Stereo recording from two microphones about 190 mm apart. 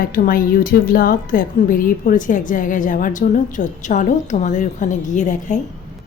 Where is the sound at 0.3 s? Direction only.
50° left (ahead or behind).